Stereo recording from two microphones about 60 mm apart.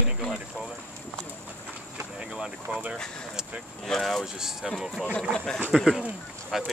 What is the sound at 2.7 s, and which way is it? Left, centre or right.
Speech, right.